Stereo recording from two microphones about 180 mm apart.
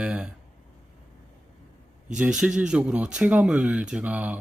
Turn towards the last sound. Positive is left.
turn(degrees=-10)  # may be behind; listen again after turning